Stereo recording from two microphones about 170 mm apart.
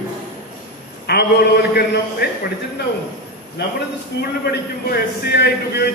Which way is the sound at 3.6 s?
70° left (ahead or behind).